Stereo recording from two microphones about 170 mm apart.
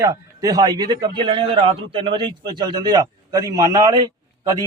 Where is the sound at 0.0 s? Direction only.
20° right (ahead or behind).